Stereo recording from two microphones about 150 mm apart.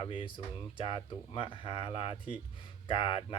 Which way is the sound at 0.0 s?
35° left (ahead or behind).